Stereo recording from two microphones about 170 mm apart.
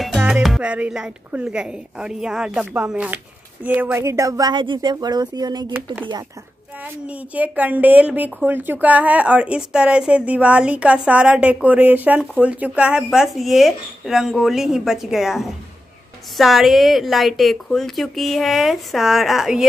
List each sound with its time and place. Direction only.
0.0 s speech: 5° right (ahead or behind); by 5.7 s 25° right (ahead or behind)
7.1 s a woman's voice: 10° right (ahead or behind)